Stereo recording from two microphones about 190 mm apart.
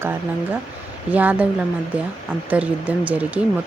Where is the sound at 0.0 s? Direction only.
10° right (ahead or behind).